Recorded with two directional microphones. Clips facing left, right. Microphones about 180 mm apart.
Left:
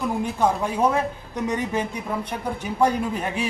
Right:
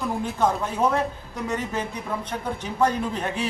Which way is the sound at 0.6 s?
10° left (ahead or behind).